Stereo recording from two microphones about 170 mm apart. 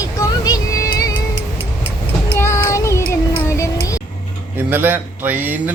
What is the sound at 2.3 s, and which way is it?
Child singing, 15° left (ahead or behind).